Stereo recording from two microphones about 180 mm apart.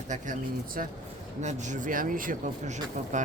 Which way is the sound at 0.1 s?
50° right (ahead or behind).